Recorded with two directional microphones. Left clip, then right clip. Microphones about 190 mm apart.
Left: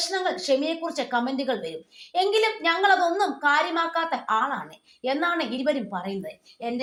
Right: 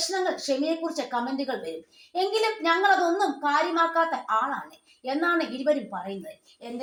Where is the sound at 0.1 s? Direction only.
25° left (ahead or behind).